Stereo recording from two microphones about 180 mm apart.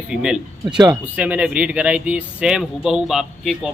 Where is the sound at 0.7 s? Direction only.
20° right (ahead or behind).